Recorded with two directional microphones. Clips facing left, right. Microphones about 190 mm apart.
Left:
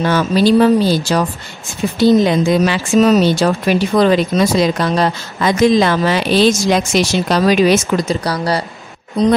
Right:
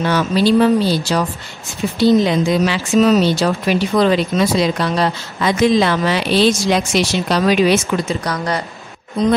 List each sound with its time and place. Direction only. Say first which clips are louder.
0.0 s speech: left 2 dB; 45° left (ahead or behind)